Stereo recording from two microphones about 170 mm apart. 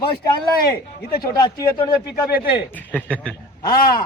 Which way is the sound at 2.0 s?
65° left (ahead or behind).